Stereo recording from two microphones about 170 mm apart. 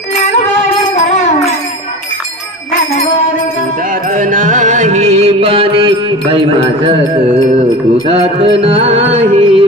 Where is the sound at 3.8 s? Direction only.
50° right (ahead or behind).